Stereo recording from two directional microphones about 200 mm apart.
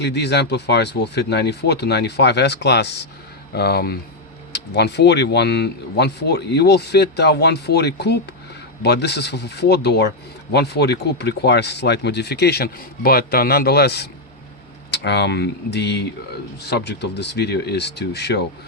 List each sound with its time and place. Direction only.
0.0 s speech: 55° left (ahead or behind)